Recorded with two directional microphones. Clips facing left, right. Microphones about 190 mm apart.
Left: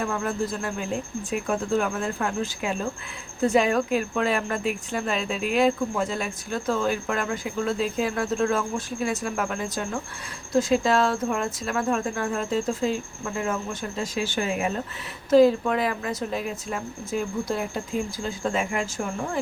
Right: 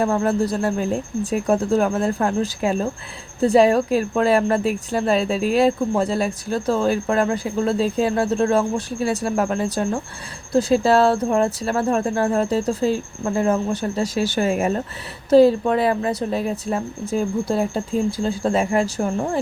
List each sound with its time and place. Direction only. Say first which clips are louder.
0.0 s speech: right 8 dB; 40° right (ahead or behind)
15.3 s speech: right 4 dB; 30° right (ahead or behind)